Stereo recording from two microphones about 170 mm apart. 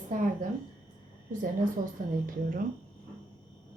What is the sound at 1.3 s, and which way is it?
A woman's voice, 50° right (ahead or behind).